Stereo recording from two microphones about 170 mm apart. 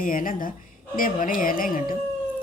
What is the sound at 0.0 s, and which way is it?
A woman's voice, 55° left (ahead or behind).